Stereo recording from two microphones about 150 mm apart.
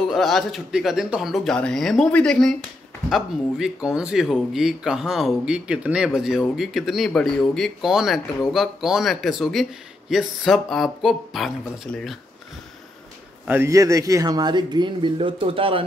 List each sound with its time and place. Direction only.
0.1 s speech: centre (ahead or behind)
13.5 s a man's voice: 15° right (ahead or behind); by 15.8 s 40° right (ahead or behind)